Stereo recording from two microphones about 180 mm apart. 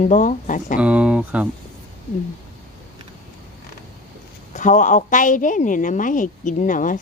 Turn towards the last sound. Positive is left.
turn(degrees=45)  # may be behind; listen again after turning